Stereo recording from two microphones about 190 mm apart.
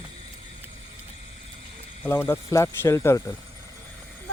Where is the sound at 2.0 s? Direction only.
10° left (ahead or behind).